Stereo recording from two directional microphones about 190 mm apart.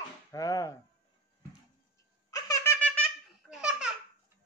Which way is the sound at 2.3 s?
20° left (ahead or behind).